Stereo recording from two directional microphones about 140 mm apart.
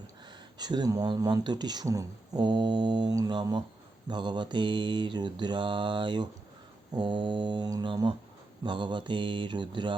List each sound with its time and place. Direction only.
0.6 s speech: 30° right (ahead or behind)
4.1 s mantra: 35° right (ahead or behind)